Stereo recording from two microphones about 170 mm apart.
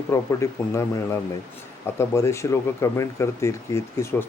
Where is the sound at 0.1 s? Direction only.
15° left (ahead or behind).